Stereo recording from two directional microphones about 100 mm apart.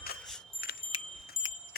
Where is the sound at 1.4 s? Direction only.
50° left (ahead or behind).